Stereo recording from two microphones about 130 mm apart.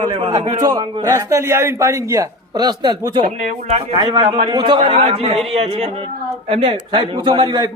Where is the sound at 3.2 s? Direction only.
60° right (ahead or behind).